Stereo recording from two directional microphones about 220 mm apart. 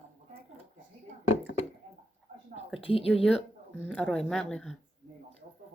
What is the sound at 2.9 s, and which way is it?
Speech, 25° left (ahead or behind).